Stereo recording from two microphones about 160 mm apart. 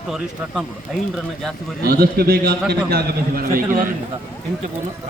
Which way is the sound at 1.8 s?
70° right (ahead or behind).